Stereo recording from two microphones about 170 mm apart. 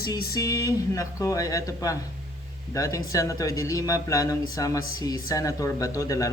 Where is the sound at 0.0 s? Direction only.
20° left (ahead or behind).